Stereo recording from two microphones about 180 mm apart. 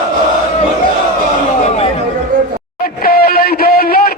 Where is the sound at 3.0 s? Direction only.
55° left (ahead or behind).